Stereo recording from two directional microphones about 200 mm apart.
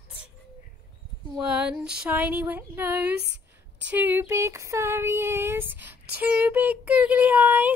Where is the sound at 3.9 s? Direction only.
10° right (ahead or behind).